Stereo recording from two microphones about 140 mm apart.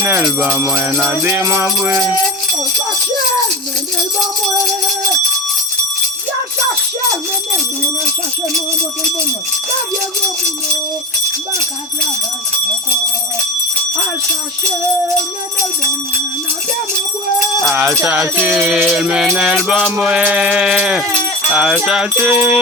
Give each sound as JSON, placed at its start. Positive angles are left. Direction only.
{"t": 0.0, "sound": "music", "side_deg": -10}
{"t": 17.6, "sound": "music", "side_deg": 0}
{"t": 17.8, "sound": "music", "side_deg": -15}